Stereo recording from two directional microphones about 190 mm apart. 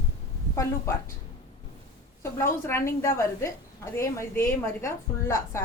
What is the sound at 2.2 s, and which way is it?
A woman's voice, 15° left (ahead or behind).